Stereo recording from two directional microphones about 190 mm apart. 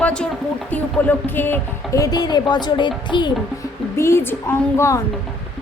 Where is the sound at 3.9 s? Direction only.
15° left (ahead or behind).